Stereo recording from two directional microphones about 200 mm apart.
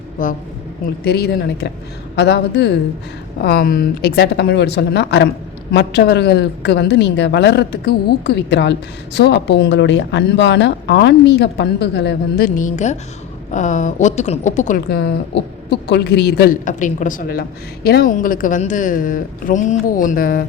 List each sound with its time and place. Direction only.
0.2 s speech: 45° left (ahead or behind)
1.0 s speech: 55° left (ahead or behind)
12.5 s speech: 40° left (ahead or behind)
14.8 s speech: 55° left (ahead or behind)